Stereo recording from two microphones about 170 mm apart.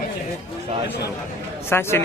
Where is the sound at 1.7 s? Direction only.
15° left (ahead or behind).